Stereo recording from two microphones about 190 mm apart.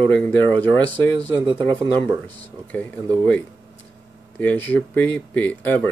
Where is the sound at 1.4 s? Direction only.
25° right (ahead or behind).